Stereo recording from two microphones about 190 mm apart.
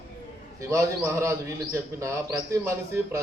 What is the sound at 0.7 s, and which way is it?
A man's voice, 15° right (ahead or behind).